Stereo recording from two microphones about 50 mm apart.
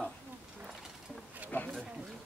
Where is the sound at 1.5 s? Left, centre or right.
Left.